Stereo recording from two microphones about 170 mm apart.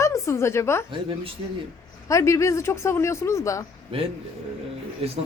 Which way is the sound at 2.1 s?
20° left (ahead or behind).